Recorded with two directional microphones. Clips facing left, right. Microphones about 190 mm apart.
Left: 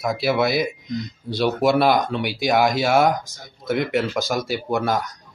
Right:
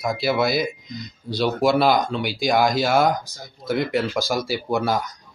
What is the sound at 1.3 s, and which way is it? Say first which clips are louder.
Speech: left 1 dB; 25° left (ahead or behind).